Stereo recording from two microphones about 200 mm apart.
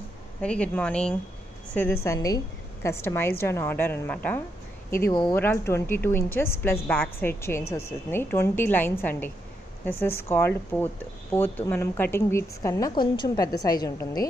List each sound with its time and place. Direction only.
0.4 s a woman's voice: 5° left (ahead or behind)